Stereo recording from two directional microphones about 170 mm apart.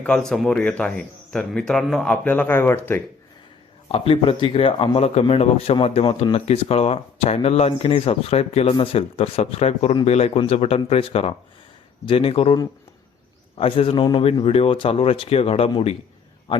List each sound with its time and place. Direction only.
0.0 s speech: 5° left (ahead or behind)
3.8 s speech: 35° left (ahead or behind)
13.6 s speech: 30° left (ahead or behind)